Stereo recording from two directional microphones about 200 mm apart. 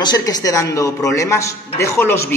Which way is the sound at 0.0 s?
20° left (ahead or behind).